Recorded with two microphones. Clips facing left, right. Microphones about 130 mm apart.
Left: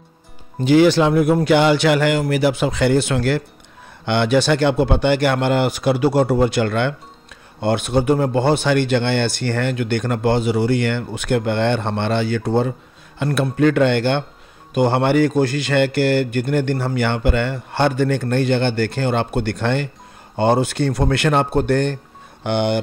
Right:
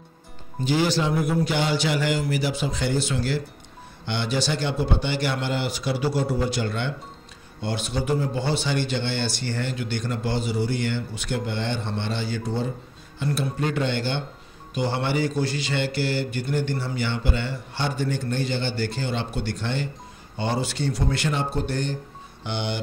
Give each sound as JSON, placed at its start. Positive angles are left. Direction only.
{"t": 0.7, "sound": "speech", "side_deg": 65}